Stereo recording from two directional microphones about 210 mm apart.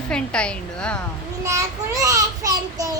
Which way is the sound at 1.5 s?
15° right (ahead or behind).